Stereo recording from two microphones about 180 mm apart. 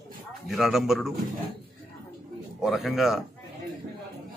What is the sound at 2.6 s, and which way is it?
Speech, centre (ahead or behind).